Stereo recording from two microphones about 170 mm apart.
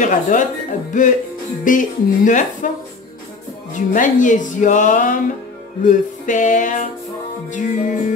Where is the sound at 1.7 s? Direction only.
50° left (ahead or behind).